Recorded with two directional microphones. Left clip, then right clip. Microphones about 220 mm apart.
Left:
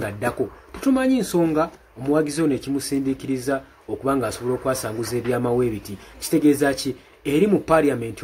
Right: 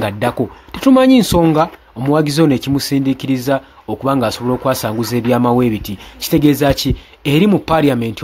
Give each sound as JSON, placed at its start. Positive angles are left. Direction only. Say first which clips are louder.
{"t": 0.0, "sound": "speech", "louder": "right 7 dB", "side_deg": -45}